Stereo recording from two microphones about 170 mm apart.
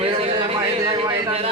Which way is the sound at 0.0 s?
35° right (ahead or behind).